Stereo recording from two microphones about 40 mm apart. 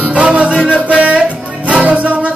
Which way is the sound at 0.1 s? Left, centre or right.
Right.